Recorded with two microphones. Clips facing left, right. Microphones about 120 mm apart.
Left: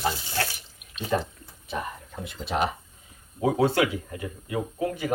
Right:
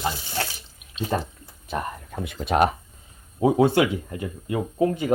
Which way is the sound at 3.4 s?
20° right (ahead or behind).